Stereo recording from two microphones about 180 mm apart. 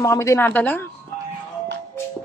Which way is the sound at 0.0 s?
15° left (ahead or behind).